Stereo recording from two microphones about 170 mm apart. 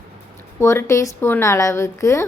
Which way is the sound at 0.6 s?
15° left (ahead or behind).